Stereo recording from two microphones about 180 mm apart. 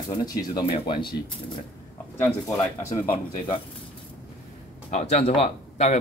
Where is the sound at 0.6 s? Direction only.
30° left (ahead or behind).